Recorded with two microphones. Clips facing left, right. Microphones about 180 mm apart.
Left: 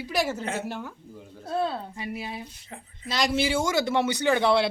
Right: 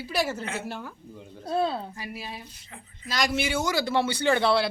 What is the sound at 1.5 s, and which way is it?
Speech, centre (ahead or behind).